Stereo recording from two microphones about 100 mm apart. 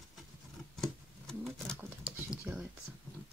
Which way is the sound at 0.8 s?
5° left (ahead or behind).